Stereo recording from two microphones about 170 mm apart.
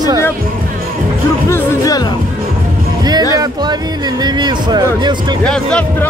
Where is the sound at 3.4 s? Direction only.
25° right (ahead or behind).